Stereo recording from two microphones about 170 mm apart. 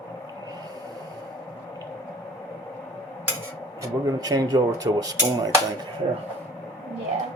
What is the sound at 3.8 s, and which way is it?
Speech, 20° right (ahead or behind).